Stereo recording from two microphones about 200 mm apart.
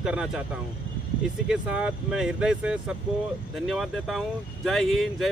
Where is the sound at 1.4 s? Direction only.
5° right (ahead or behind).